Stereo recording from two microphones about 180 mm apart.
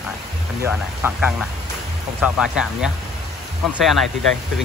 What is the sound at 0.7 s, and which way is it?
Speech, 10° right (ahead or behind).